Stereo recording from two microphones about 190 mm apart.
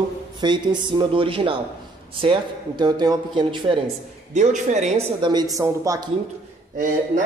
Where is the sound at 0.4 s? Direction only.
25° right (ahead or behind).